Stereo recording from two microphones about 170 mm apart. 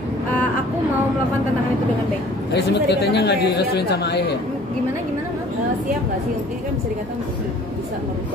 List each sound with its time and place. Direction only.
2.5 s speech: 75° left (ahead or behind)